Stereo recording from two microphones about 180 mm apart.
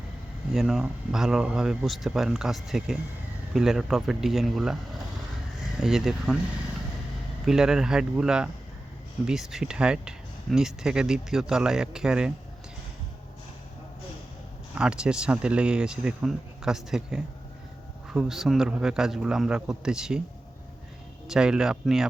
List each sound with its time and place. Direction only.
0.5 s speech: centre (ahead or behind)
5.8 s speech: centre (ahead or behind)
7.4 s speech: 5° right (ahead or behind)
14.8 s speech: 5° right (ahead or behind)
21.2 s speech: 5° right (ahead or behind)